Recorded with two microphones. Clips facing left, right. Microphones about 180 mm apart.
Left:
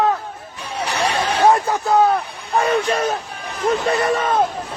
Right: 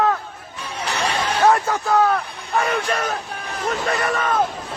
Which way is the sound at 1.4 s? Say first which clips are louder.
Left 2 dB; 20° left (ahead or behind).